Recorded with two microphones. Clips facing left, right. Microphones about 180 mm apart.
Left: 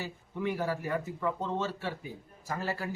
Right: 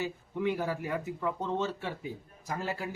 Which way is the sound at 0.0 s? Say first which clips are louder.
Right 3 dB; 15° right (ahead or behind).